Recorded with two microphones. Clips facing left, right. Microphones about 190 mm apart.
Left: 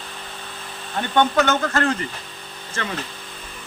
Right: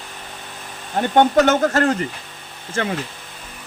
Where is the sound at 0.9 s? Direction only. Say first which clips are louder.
Right 4 dB; 40° right (ahead or behind).